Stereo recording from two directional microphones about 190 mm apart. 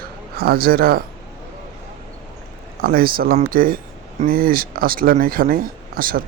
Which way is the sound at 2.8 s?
50° right (ahead or behind).